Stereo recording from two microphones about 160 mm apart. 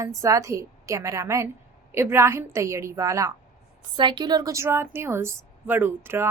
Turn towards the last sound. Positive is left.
turn(degrees=-15)  # may be behind; listen again after turning